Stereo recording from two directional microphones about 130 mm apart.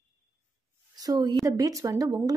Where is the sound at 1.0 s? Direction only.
30° right (ahead or behind).